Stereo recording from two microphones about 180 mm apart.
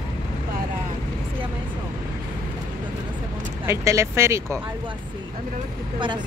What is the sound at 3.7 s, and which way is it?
Speech, 15° right (ahead or behind).